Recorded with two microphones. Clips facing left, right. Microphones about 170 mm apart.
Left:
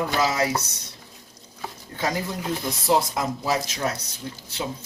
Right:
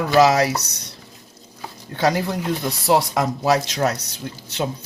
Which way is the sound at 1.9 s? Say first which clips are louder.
Right 7 dB; 70° right (ahead or behind).